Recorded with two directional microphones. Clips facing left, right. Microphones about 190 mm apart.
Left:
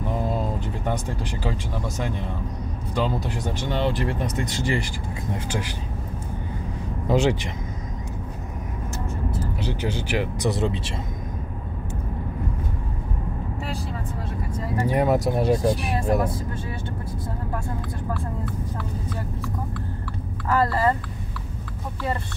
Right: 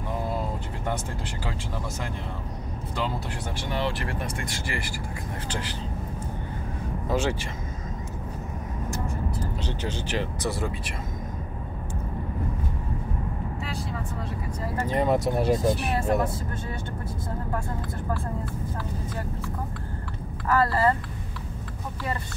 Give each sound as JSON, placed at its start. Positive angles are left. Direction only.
{"t": 3.0, "sound": "speech", "side_deg": 15}
{"t": 7.1, "sound": "speech", "side_deg": 15}
{"t": 9.6, "sound": "speech", "side_deg": 10}
{"t": 14.8, "sound": "speech", "side_deg": 10}